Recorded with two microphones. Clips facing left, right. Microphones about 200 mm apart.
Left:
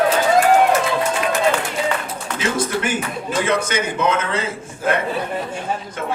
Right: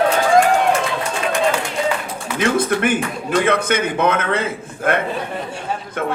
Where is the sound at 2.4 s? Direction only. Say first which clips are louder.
Right 4 dB; 55° right (ahead or behind).